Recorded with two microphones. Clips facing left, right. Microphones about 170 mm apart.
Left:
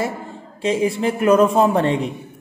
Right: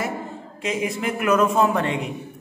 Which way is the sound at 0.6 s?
30° left (ahead or behind).